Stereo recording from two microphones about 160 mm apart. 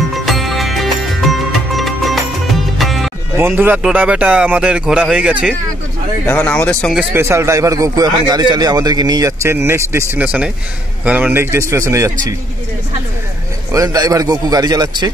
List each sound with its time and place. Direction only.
0.2 s music: centre (ahead or behind)
3.3 s speech: 15° right (ahead or behind)
6.2 s speech: 10° left (ahead or behind)
7.2 s speech: 15° right (ahead or behind)
13.7 s speech: 20° right (ahead or behind)